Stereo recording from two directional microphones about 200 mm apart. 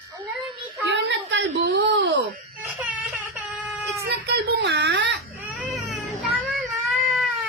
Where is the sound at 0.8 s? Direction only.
60° right (ahead or behind).